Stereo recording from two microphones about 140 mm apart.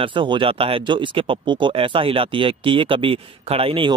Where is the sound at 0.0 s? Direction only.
35° right (ahead or behind).